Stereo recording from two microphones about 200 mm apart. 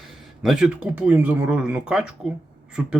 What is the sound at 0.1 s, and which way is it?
Speech, centre (ahead or behind).